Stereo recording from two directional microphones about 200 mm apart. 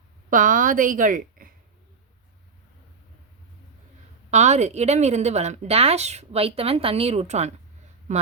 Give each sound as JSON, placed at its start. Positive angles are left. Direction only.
{"t": 0.3, "sound": "a woman's voice", "side_deg": -40}
{"t": 4.3, "sound": "a woman's voice", "side_deg": -35}